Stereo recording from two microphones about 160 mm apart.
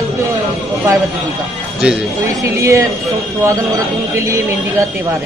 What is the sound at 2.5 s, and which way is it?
Speech, 20° right (ahead or behind).